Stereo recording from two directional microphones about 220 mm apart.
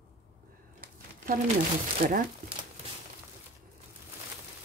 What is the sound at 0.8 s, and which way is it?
Crumpling, 40° right (ahead or behind).